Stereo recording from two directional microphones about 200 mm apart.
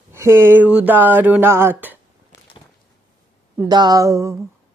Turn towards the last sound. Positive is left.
turn(degrees=-15)  # may be behind; listen again after turning